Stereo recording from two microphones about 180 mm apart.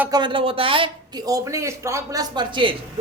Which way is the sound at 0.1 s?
25° right (ahead or behind).